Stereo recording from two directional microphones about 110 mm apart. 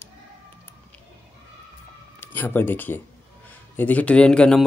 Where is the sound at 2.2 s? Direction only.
20° left (ahead or behind).